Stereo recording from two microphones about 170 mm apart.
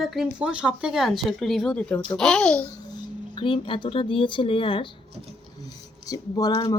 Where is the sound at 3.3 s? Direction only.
30° left (ahead or behind).